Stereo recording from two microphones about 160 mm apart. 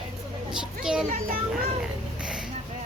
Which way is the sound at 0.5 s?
5° right (ahead or behind).